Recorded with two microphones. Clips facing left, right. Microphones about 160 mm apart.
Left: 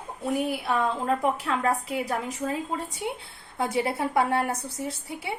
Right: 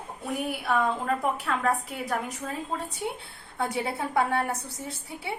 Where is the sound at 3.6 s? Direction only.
Centre (ahead or behind).